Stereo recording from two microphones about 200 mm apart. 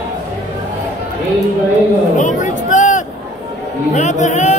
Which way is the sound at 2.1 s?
40° left (ahead or behind).